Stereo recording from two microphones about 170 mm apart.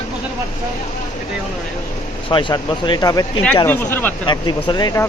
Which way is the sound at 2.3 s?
25° left (ahead or behind).